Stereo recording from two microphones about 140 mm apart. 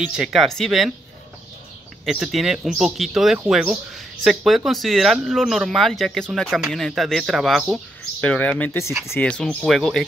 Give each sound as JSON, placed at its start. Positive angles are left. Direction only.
{"t": 0.1, "sound": "speech", "side_deg": -5}
{"t": 2.0, "sound": "speech", "side_deg": 0}
{"t": 8.2, "sound": "speech", "side_deg": 10}
{"t": 9.3, "sound": "speech", "side_deg": 5}